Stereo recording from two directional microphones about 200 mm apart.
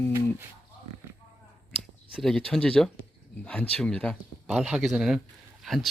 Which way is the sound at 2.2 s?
5° left (ahead or behind).